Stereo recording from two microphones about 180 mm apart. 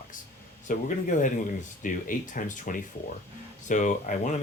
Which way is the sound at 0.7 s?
45° left (ahead or behind).